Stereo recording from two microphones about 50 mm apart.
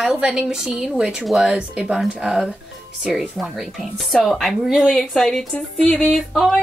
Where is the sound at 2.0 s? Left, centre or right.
Centre.